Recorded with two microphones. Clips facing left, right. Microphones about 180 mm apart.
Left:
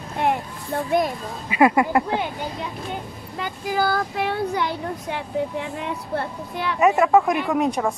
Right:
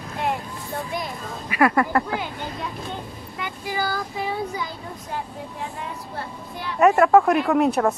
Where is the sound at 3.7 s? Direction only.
60° left (ahead or behind).